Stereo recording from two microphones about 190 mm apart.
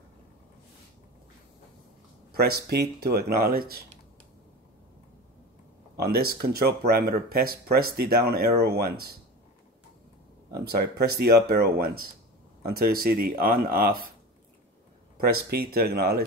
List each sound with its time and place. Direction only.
2.3 s speech: 55° right (ahead or behind)
5.9 s speech: 55° right (ahead or behind)
10.5 s speech: 55° right (ahead or behind)
15.1 s speech: 55° right (ahead or behind)